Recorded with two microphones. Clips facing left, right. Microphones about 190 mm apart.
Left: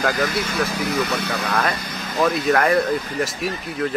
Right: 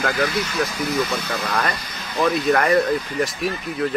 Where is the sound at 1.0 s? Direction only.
65° left (ahead or behind).